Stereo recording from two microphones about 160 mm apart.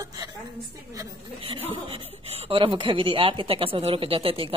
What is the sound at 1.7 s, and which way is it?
Speech, 40° right (ahead or behind).